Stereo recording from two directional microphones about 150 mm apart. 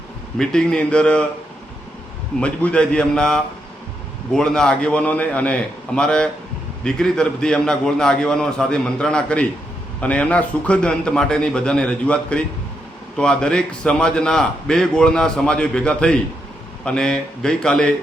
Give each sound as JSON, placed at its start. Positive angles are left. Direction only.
{"t": 0.3, "sound": "a man's voice", "side_deg": 5}
{"t": 2.4, "sound": "a man's voice", "side_deg": 5}